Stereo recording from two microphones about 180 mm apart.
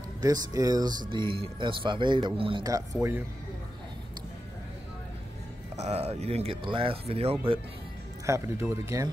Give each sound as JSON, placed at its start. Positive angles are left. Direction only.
{"t": 0.2, "sound": "speech", "side_deg": -20}
{"t": 5.8, "sound": "speech", "side_deg": -40}
{"t": 8.3, "sound": "speech", "side_deg": -15}